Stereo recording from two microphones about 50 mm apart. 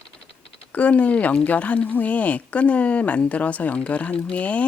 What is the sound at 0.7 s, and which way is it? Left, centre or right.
Speech, left.